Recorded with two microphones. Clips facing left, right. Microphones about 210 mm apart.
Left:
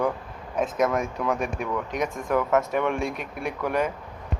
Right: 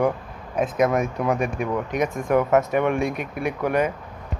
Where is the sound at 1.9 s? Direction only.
55° right (ahead or behind).